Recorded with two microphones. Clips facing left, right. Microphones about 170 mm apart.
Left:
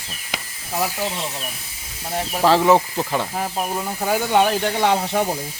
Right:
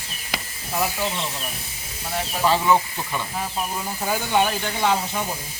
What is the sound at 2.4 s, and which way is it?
Speech, 80° left.